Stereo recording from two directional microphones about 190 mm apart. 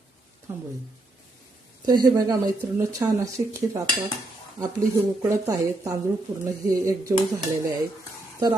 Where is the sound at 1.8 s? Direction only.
20° right (ahead or behind).